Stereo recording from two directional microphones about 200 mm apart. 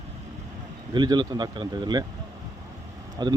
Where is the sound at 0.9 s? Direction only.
20° right (ahead or behind).